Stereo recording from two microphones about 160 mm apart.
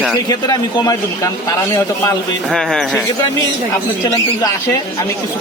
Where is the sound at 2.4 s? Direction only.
5° left (ahead or behind).